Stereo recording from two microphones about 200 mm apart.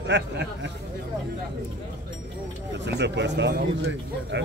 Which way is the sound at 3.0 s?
60° right (ahead or behind).